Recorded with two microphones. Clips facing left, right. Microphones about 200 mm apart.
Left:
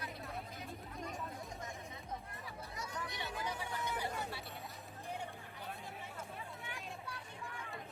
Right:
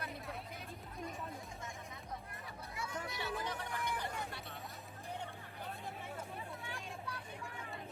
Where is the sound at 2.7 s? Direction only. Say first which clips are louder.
Right 2 dB; 40° left (ahead or behind).